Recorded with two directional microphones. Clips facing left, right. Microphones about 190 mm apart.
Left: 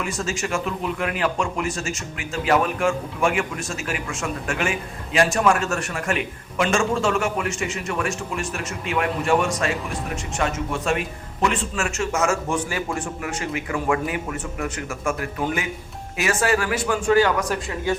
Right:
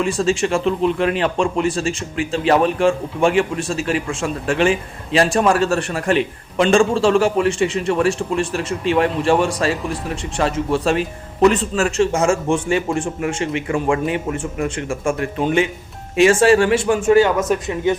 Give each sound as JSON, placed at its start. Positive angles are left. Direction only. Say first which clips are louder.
{"t": 0.0, "sound": "a man's voice", "louder": "right 9 dB", "side_deg": -30}